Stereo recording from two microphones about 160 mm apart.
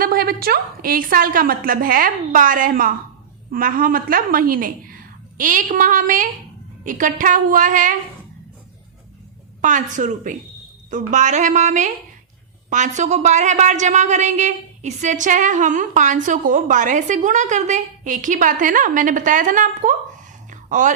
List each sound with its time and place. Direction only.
0.0 s a woman's voice: 65° right (ahead or behind)
9.6 s a woman's voice: 50° right (ahead or behind)
20.5 s a sound: 50° right (ahead or behind)